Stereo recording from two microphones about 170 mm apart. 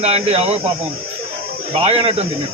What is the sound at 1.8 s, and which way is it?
Speech, 35° right (ahead or behind).